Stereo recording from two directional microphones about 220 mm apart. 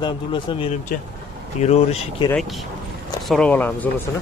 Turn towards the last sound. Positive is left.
turn(degrees=10)  # may be behind; listen again after turning